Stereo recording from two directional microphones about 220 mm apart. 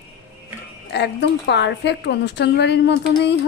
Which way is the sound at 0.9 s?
55° left (ahead or behind).